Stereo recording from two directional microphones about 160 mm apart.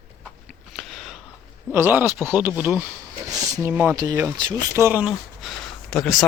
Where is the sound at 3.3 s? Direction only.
20° right (ahead or behind).